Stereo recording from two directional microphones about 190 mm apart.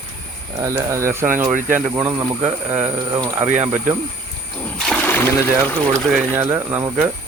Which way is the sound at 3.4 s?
40° right (ahead or behind).